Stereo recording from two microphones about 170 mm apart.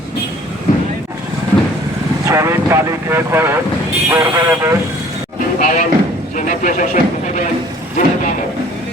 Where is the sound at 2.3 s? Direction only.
15° right (ahead or behind).